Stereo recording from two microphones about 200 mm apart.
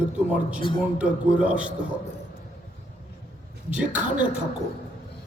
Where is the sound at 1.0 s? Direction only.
5° right (ahead or behind).